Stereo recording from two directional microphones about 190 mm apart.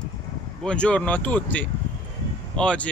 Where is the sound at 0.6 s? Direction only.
5° left (ahead or behind).